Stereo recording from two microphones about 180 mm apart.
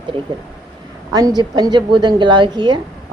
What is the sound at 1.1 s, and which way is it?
Speech, 20° right (ahead or behind).